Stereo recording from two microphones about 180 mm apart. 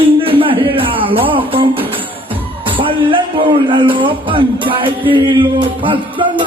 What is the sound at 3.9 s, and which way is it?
Speech, 30° right (ahead or behind).